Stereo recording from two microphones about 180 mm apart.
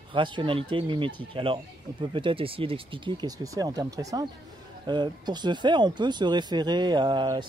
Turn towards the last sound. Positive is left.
turn(degrees=-25)  # may be behind; listen again after turning